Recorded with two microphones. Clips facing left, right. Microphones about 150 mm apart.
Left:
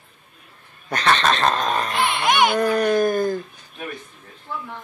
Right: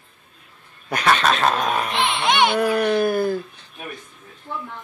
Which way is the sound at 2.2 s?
5° left (ahead or behind).